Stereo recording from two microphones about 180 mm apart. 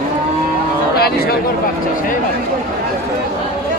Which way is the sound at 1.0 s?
60° left (ahead or behind).